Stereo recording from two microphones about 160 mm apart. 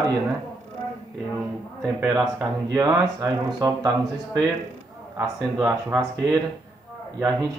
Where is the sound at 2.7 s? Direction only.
25° right (ahead or behind).